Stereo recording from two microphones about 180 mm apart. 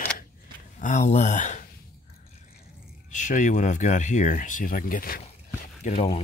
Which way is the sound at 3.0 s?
45° left (ahead or behind).